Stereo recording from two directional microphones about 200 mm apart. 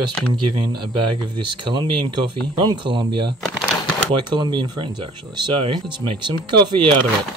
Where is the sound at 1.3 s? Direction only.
25° right (ahead or behind).